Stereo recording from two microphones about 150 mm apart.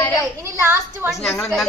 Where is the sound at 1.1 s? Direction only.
Centre (ahead or behind).